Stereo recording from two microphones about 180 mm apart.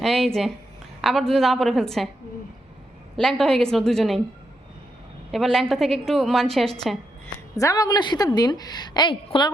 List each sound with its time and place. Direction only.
0.0 s a woman's voice: centre (ahead or behind)
3.2 s a woman's voice: 5° left (ahead or behind)
5.3 s a woman's voice: centre (ahead or behind)
7.5 s a woman's voice: 20° left (ahead or behind)